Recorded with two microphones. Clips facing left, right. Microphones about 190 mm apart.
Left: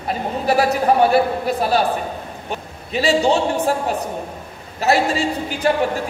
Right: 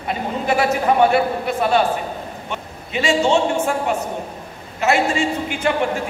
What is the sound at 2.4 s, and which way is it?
A man's voice, 35° left (ahead or behind).